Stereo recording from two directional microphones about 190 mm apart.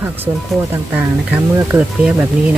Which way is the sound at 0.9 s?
5° right (ahead or behind).